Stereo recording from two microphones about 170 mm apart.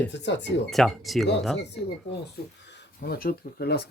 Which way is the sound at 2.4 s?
70° left (ahead or behind).